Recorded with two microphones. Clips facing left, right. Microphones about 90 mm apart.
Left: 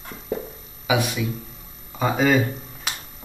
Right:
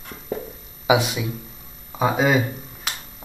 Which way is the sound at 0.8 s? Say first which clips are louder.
Right 3 dB; 20° right (ahead or behind).